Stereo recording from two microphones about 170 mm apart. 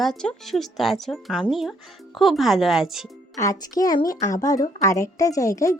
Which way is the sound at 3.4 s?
20° left (ahead or behind).